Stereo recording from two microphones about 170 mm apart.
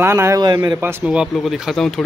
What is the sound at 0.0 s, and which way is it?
A man's voice, 15° right (ahead or behind).